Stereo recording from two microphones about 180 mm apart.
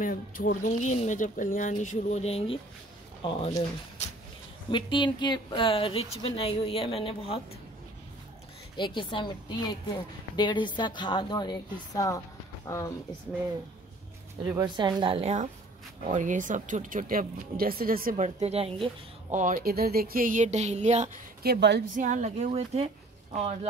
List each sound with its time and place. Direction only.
0.0 s speech: 50° left (ahead or behind); by 3.5 s 35° left (ahead or behind)
4.6 s speech: 25° left (ahead or behind)
8.7 s a woman's voice: 25° left (ahead or behind)
14.8 s a woman's voice: 25° right (ahead or behind); by 18.1 s 55° right (ahead or behind)
18.1 s speech: 35° right (ahead or behind)
19.3 s speech: 50° right (ahead or behind)
21.4 s speech: 65° right (ahead or behind)
21.9 s speech: 45° right (ahead or behind)